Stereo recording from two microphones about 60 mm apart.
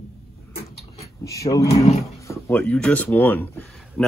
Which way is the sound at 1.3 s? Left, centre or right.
Left.